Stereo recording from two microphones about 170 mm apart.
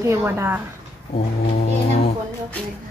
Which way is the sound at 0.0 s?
15° right (ahead or behind).